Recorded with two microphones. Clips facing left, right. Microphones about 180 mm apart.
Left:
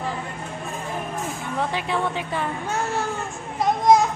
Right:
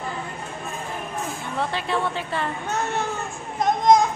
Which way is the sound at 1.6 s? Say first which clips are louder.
Even; 15° left (ahead or behind).